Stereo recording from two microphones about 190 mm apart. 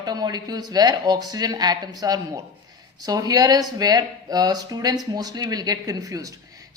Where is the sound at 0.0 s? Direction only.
20° right (ahead or behind).